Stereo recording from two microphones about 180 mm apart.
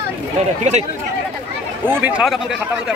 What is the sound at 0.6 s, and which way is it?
Speech, 40° right (ahead or behind).